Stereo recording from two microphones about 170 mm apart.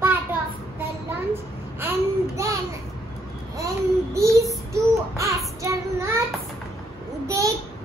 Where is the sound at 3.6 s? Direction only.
20° right (ahead or behind).